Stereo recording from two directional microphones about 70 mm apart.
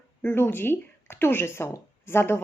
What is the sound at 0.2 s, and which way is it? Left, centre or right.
A woman's voice, left.